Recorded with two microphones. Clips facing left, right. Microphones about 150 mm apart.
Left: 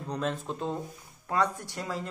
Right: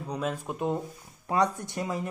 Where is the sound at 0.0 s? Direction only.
10° right (ahead or behind).